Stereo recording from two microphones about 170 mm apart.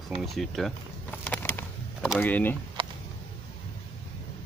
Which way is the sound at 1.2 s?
10° left (ahead or behind).